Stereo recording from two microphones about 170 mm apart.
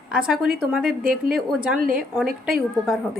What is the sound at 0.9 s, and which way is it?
Speech, 60° right (ahead or behind).